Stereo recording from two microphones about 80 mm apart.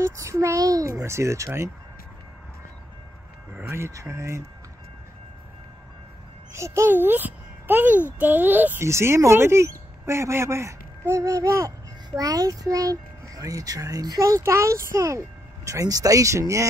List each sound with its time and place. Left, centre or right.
0.0 s speech: right
3.5 s speech: right
6.5 s speech: right
6.9 s a child's voice: right
8.8 s a child's voice: right